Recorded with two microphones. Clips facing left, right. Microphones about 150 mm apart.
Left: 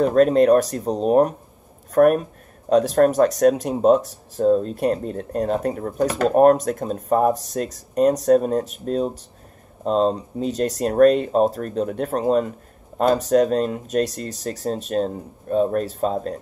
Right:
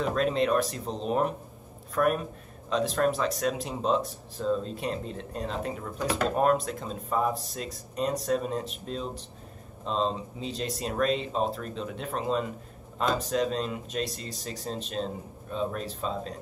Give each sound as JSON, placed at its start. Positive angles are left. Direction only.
{"t": 0.0, "sound": "speech", "side_deg": 45}